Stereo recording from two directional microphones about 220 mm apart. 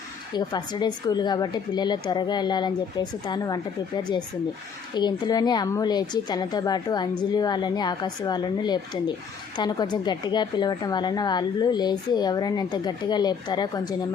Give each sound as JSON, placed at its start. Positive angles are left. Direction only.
{"t": 0.3, "sound": "a woman's voice", "side_deg": 20}